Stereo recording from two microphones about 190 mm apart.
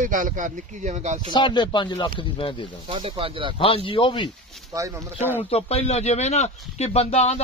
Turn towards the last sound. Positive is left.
turn(degrees=35)  # may be behind; listen again after turning